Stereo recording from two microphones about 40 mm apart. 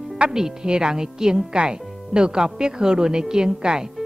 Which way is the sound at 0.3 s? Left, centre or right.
Centre.